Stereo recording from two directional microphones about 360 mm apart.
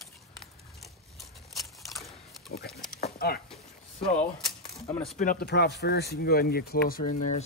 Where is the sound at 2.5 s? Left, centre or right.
Left.